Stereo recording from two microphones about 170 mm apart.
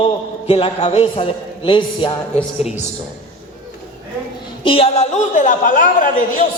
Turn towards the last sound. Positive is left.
turn(degrees=50)  # may be behind; listen again after turning